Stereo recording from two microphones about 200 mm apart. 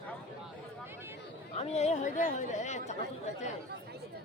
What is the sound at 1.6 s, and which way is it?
Speech, 30° left (ahead or behind).